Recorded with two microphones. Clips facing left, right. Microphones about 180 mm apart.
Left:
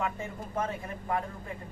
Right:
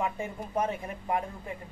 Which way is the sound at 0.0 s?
20° right (ahead or behind).